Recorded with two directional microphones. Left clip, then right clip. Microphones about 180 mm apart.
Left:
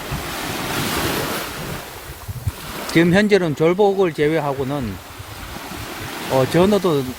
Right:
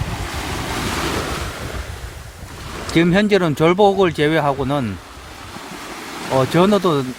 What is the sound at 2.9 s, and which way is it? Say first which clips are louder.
Speech: even; 10° right (ahead or behind).